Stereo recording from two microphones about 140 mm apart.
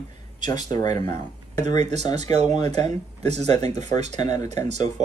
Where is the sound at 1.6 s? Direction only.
55° right (ahead or behind).